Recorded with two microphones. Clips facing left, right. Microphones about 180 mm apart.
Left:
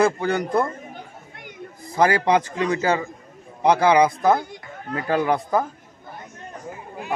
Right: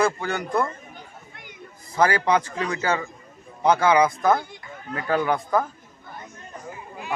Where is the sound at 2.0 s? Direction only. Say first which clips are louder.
Left 2 dB; 30° left (ahead or behind).